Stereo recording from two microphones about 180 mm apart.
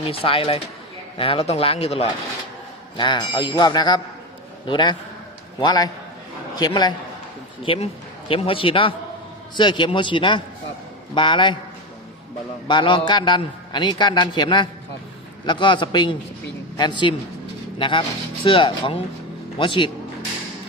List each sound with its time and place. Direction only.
0.0 s a man's voice: 30° left (ahead or behind)
12.6 s a man's voice: 25° left (ahead or behind)